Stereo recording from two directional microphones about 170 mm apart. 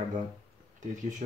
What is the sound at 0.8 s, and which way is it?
Speech, 45° right (ahead or behind).